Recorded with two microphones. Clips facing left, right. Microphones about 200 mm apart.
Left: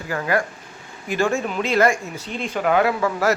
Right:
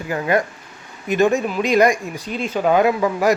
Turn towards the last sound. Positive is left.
turn(degrees=-15)  # may be behind; listen again after turning